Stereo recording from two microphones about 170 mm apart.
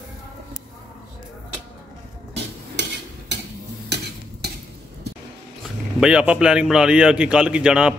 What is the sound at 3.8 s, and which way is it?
Stir, 80° right.